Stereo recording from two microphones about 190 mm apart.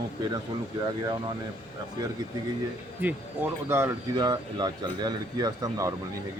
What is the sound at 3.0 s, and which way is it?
Speech, 10° right (ahead or behind).